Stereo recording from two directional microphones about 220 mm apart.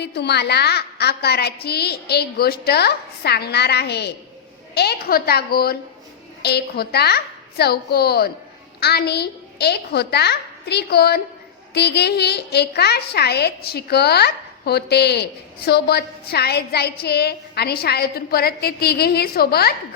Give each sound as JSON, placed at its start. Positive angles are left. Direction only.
{"t": 0.0, "sound": "a woman's voice", "side_deg": 50}